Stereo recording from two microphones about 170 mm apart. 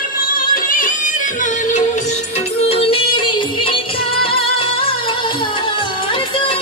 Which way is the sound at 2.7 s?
35° left (ahead or behind).